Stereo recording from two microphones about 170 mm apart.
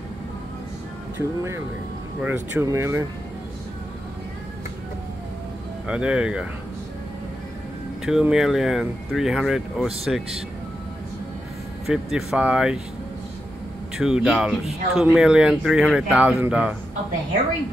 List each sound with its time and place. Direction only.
2.2 s speech: 10° right (ahead or behind)
5.9 s speech: 5° right (ahead or behind)
8.0 s speech: 5° right (ahead or behind)
11.8 s speech: centre (ahead or behind)
13.9 s speech: 5° right (ahead or behind)